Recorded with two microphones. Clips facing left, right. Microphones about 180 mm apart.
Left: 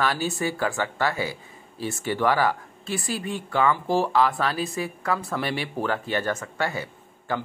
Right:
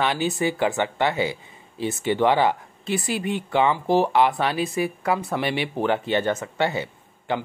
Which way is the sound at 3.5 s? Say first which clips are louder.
Right 2 dB; 20° right (ahead or behind).